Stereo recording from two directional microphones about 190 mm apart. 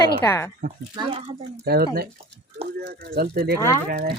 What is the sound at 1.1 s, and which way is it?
Speech, 35° right (ahead or behind).